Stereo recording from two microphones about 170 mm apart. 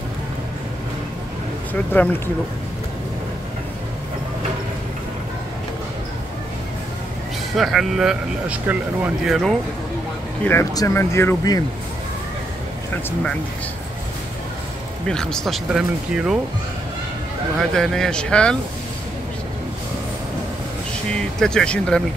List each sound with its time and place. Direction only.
1.7 s speech: 10° left (ahead or behind)
7.5 s speech: centre (ahead or behind)
10.4 s speech: 15° left (ahead or behind)
15.0 s speech: 5° left (ahead or behind)
17.6 s speech: centre (ahead or behind)
21.1 s speech: 5° left (ahead or behind)